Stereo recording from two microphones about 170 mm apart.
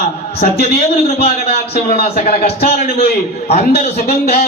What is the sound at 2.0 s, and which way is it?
Speech, 35° left (ahead or behind).